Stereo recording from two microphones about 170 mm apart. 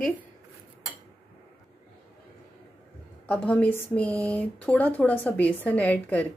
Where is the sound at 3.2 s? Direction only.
5° left (ahead or behind).